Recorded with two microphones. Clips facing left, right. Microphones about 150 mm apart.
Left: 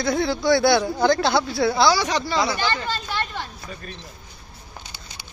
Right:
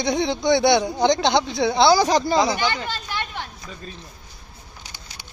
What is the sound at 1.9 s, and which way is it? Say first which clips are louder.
Speech: right 4 dB; 35° right (ahead or behind).